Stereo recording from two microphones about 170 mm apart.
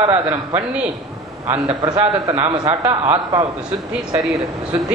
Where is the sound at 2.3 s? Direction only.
25° right (ahead or behind).